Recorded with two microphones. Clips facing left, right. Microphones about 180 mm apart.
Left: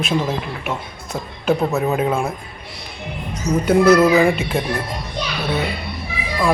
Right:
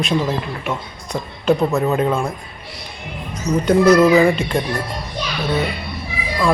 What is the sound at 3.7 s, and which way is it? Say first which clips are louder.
Speech: right 1 dB; 5° left (ahead or behind).